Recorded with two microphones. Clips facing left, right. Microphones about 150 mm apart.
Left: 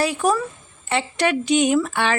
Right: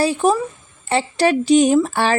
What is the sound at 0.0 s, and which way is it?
Speech, 30° right (ahead or behind).